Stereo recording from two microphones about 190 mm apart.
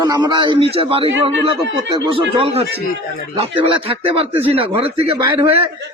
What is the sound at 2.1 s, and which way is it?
Speech, 30° right (ahead or behind).